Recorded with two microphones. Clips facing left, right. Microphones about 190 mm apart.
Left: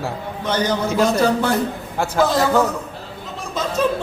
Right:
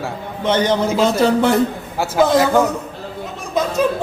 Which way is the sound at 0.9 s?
Centre (ahead or behind).